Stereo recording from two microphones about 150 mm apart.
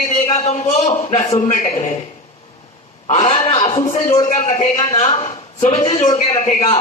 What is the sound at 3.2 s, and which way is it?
Speech, 50° left (ahead or behind).